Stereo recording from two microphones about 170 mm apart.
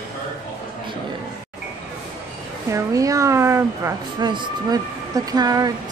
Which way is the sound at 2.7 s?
20° right (ahead or behind).